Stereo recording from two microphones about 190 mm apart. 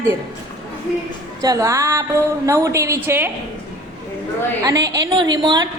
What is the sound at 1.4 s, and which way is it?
A woman's voice, 20° right (ahead or behind).